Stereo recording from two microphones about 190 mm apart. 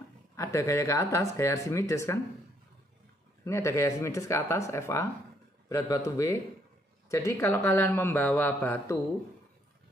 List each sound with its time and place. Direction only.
0.4 s a man's voice: 15° left (ahead or behind)
3.4 s a man's voice: 15° left (ahead or behind)